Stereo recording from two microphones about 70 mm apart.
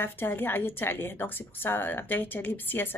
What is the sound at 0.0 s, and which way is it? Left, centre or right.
A woman's voice, left.